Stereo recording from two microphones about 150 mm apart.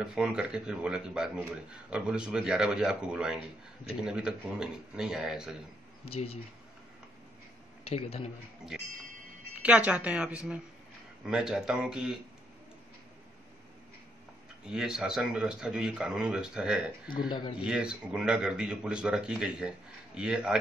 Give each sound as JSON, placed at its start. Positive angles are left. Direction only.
{"t": 0.0, "sound": "speech", "side_deg": -5}
{"t": 6.0, "sound": "speech", "side_deg": 40}
{"t": 7.9, "sound": "a man's voice", "side_deg": 45}
{"t": 9.6, "sound": "speech", "side_deg": -10}
{"t": 14.7, "sound": "speech", "side_deg": -5}
{"t": 17.3, "sound": "speech", "side_deg": 30}
{"t": 17.6, "sound": "speech", "side_deg": -5}